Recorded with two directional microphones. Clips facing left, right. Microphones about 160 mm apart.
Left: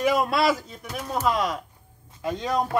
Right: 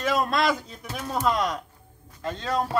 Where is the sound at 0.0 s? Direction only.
10° left (ahead or behind).